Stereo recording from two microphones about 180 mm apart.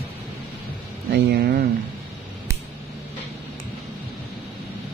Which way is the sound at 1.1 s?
60° right (ahead or behind).